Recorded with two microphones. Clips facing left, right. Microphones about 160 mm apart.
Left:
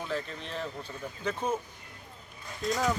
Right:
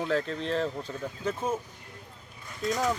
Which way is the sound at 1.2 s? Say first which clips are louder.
Right 1 dB; 5° right (ahead or behind).